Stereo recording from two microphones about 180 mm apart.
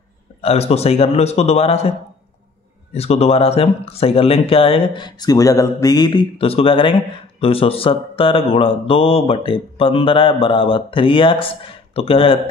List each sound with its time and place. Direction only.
0.4 s speech: 35° left (ahead or behind)